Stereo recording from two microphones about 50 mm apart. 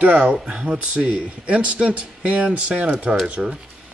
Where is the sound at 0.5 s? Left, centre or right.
Centre.